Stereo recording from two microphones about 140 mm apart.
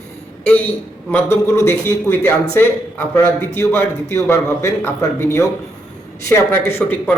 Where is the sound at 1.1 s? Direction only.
15° left (ahead or behind).